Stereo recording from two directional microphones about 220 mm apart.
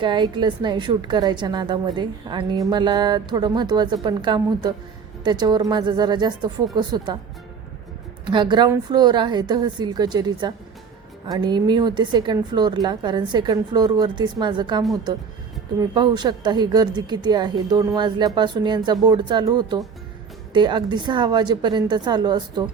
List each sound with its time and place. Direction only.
0.0 s a woman's voice: 20° right (ahead or behind)
8.3 s a woman's voice: 20° right (ahead or behind)